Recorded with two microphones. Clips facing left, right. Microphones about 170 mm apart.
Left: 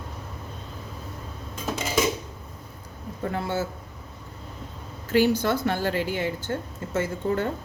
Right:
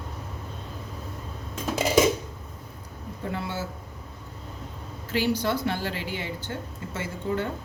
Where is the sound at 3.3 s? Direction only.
50° left (ahead or behind).